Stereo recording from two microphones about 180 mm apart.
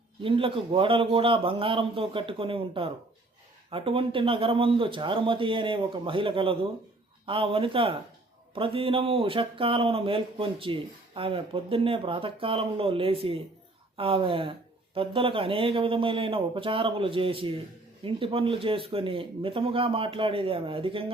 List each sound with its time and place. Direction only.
0.2 s a man's voice: 30° right (ahead or behind)